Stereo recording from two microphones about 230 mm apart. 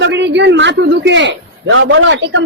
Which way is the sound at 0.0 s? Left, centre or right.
Right.